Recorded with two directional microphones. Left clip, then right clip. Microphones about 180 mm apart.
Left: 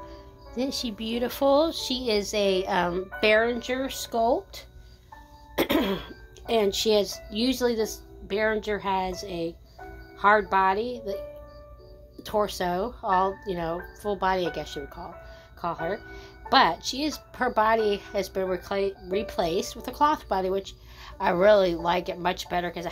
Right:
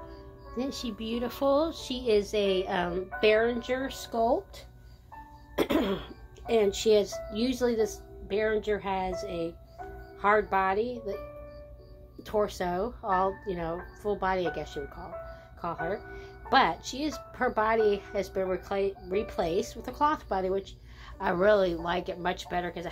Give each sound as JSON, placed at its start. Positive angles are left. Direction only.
{"t": 0.6, "sound": "speech", "side_deg": 40}
{"t": 12.2, "sound": "speech", "side_deg": 35}